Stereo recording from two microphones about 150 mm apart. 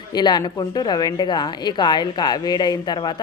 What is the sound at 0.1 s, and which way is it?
A woman's voice, 25° left (ahead or behind).